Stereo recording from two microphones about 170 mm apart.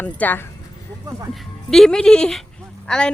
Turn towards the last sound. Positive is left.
turn(degrees=5)  # may be behind; listen again after turning